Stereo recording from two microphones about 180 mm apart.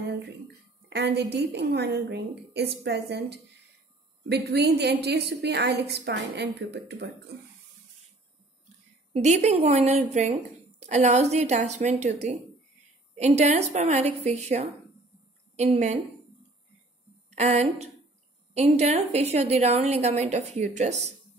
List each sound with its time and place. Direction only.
0.8 s a woman's voice: 70° right (ahead or behind)
9.1 s a woman's voice: 35° right (ahead or behind)
17.4 s a woman's voice: 40° right (ahead or behind)